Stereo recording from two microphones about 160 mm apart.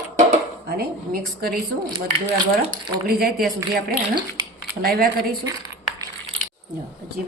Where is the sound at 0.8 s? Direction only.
70° right (ahead or behind).